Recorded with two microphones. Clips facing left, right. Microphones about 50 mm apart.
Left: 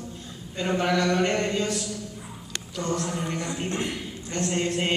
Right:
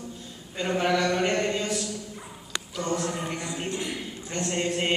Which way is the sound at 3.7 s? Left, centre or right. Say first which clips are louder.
Left 1 dB; left.